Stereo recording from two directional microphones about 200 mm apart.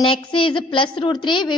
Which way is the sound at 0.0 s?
25° left (ahead or behind).